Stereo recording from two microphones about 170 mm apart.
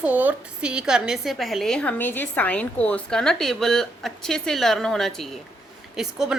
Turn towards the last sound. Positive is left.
turn(degrees=-5)  # may be behind; listen again after turning